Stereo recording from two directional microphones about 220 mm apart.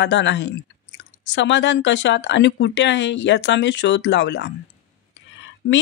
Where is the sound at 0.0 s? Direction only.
55° left (ahead or behind).